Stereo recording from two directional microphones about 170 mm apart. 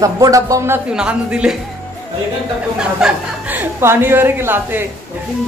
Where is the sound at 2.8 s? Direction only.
5° right (ahead or behind).